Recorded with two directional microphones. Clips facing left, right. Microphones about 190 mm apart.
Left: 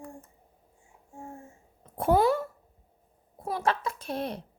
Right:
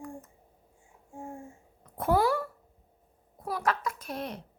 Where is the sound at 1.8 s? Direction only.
25° left (ahead or behind).